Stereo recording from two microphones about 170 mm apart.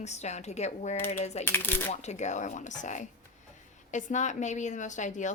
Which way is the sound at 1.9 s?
40° left (ahead or behind).